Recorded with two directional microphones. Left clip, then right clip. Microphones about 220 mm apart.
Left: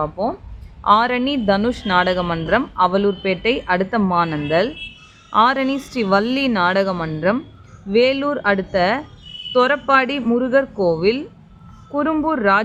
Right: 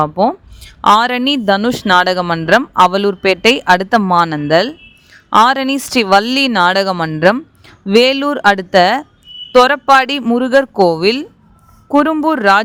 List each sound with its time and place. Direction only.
0.0 s speech: 45° right (ahead or behind)